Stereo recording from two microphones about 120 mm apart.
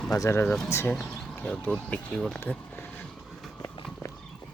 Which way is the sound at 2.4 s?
10° left (ahead or behind).